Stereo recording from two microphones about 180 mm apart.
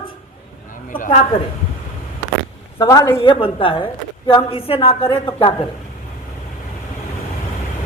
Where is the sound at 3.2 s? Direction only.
30° left (ahead or behind).